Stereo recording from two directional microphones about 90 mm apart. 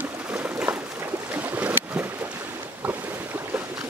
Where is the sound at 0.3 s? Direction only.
15° right (ahead or behind).